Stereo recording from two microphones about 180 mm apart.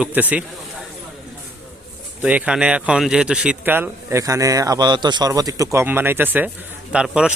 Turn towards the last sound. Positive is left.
turn(degrees=-5)  # may be behind; listen again after turning